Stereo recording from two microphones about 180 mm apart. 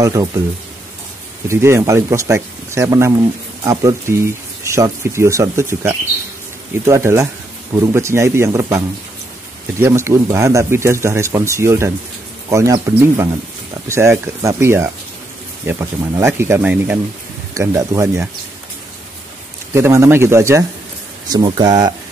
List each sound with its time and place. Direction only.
0.0 s speech: 20° right (ahead or behind)
1.5 s speech: 15° right (ahead or behind)
19.7 s speech: 15° right (ahead or behind)